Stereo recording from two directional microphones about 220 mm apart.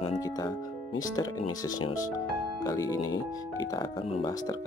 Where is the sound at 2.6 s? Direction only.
15° left (ahead or behind).